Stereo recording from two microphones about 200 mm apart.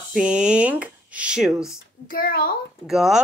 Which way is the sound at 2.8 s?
Centre (ahead or behind).